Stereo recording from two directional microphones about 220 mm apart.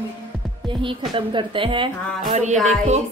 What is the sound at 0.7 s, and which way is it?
Music, 25° right (ahead or behind).